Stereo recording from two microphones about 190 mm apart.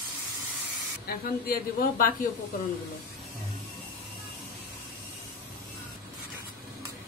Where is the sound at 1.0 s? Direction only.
50° left (ahead or behind).